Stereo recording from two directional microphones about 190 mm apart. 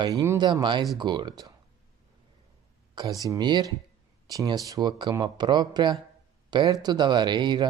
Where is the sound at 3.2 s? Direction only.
20° right (ahead or behind).